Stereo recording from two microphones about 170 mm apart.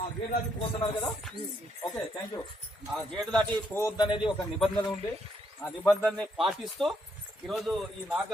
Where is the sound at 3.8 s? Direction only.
20° left (ahead or behind).